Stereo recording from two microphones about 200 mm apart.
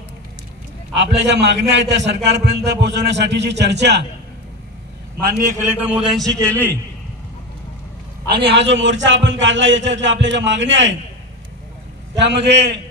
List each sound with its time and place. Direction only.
0.9 s a man's voice: 60° right (ahead or behind)
5.7 s a man's voice: 10° right (ahead or behind); by 6.8 s 10° left (ahead or behind)
8.3 s a man's voice: 55° right (ahead or behind)
12.2 s a man's voice: 60° right (ahead or behind)